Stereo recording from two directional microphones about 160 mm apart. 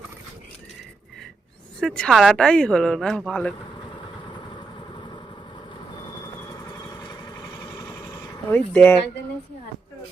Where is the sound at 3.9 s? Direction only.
30° left (ahead or behind); by 8.9 s 10° left (ahead or behind).